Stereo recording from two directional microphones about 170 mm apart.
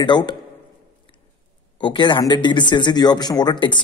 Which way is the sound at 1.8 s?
25° left (ahead or behind).